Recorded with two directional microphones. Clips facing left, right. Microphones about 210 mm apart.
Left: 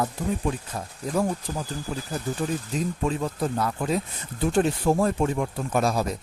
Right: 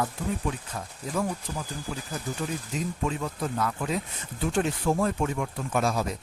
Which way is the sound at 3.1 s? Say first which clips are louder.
Left 4 dB; 35° left (ahead or behind).